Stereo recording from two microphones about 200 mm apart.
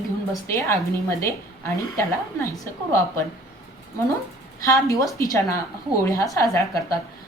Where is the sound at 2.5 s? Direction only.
15° left (ahead or behind).